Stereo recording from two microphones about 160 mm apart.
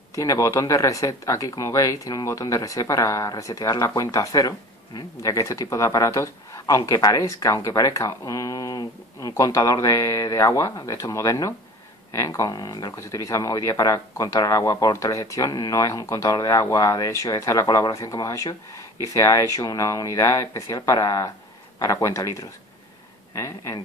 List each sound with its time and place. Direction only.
0.1 s speech: 20° left (ahead or behind)